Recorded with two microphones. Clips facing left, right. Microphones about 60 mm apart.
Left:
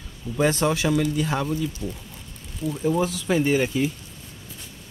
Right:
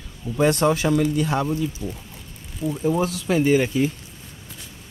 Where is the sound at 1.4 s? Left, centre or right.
Centre.